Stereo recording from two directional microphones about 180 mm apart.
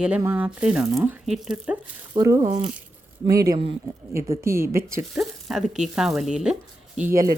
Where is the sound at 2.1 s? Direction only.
20° right (ahead or behind).